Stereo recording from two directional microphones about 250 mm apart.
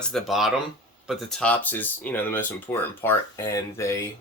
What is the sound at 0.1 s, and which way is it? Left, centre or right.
Speech, centre.